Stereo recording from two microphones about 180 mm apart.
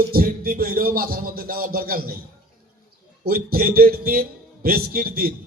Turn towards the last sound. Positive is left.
turn(degrees=-55)  # may be behind; listen again after turning